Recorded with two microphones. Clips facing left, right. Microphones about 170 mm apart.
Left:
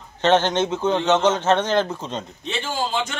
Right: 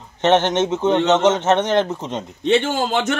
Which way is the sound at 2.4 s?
70° right (ahead or behind).